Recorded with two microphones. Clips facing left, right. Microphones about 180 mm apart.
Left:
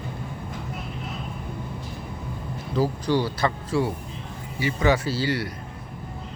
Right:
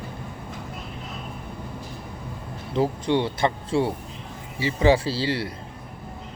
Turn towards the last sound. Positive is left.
turn(degrees=-30)  # may be behind; listen again after turning